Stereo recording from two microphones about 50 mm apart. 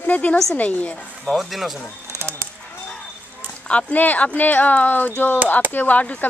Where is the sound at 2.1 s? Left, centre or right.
Right.